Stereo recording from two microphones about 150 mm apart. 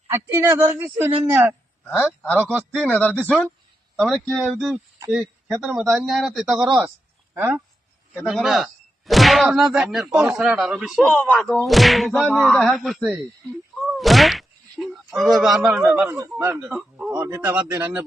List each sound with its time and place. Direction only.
0.1 s speech: 15° right (ahead or behind)
2.5 s a man's voice: 5° left (ahead or behind); by 7.6 s 10° right (ahead or behind)
8.1 s speech: centre (ahead or behind)
11.1 s speech: 10° left (ahead or behind)
15.7 s speech: 10° right (ahead or behind)